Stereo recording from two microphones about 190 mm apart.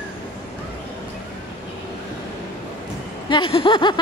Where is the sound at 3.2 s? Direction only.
25° left (ahead or behind).